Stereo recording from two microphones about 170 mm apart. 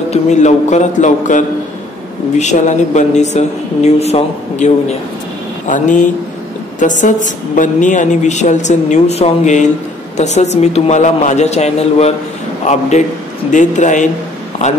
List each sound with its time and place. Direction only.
0.1 s a woman's voice: 45° left (ahead or behind)